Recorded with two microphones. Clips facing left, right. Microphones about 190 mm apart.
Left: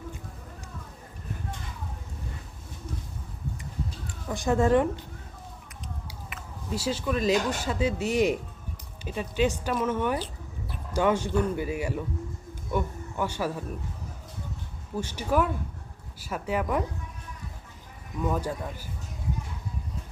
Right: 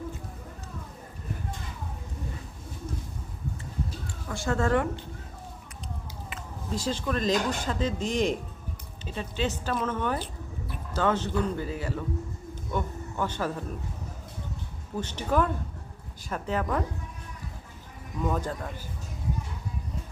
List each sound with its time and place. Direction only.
4.0 s speech: 20° left (ahead or behind)
6.7 s a man's voice: 10° left (ahead or behind)
14.9 s speech: 10° left (ahead or behind)
18.3 s speech: 10° left (ahead or behind)